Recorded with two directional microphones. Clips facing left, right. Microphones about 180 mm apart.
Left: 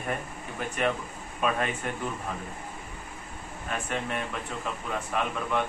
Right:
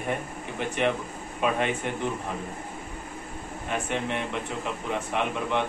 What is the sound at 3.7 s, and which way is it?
A man's voice, 20° right (ahead or behind).